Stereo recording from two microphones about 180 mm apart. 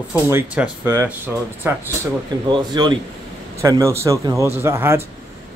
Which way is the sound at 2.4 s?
25° right (ahead or behind).